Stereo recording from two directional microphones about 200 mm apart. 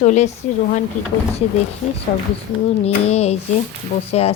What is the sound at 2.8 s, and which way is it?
A woman's voice, 30° left (ahead or behind).